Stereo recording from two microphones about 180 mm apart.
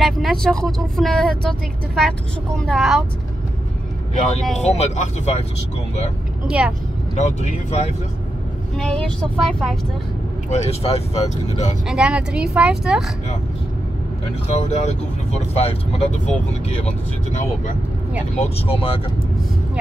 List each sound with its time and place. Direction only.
0.0 s speech: centre (ahead or behind)
4.6 s speech: 35° left (ahead or behind)
6.4 s speech: 5° right (ahead or behind)
7.2 s speech: 40° left (ahead or behind)
8.7 s speech: 5° left (ahead or behind)
10.5 s speech: 35° left (ahead or behind)
11.9 s speech: 5° right (ahead or behind)
14.5 s speech: 40° left (ahead or behind)
18.3 s speech: 30° left (ahead or behind)